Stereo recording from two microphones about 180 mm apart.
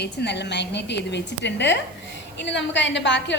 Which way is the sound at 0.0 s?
70° left (ahead or behind).